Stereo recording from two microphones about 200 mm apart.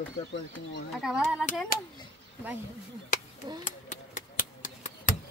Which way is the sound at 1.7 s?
45° left (ahead or behind).